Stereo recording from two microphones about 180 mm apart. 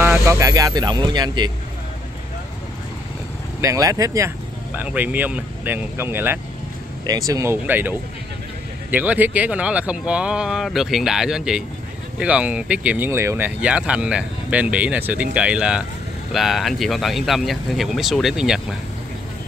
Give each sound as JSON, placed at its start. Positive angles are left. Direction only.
{"t": 0.0, "sound": "speech", "side_deg": -15}
{"t": 3.6, "sound": "speech", "side_deg": -20}
{"t": 8.9, "sound": "speech", "side_deg": -10}